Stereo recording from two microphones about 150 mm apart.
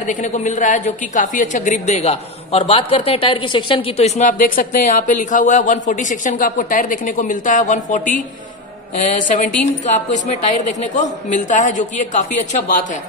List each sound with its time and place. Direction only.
0.0 s a woman's voice: 55° left (ahead or behind)